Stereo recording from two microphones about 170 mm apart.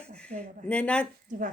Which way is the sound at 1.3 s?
50° right (ahead or behind).